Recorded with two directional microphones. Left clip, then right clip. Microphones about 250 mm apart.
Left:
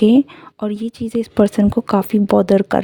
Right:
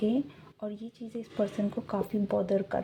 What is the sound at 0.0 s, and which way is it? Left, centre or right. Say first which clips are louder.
A woman's voice: left 17 dB; left.